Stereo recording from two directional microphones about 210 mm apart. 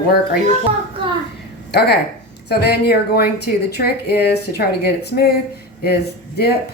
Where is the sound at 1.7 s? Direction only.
50° left (ahead or behind).